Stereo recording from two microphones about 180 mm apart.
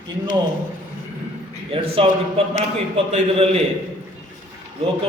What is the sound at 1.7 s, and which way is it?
A man's voice, 30° right (ahead or behind).